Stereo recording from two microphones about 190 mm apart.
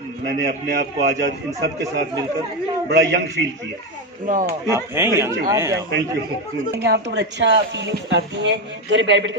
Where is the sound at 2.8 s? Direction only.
70° right (ahead or behind).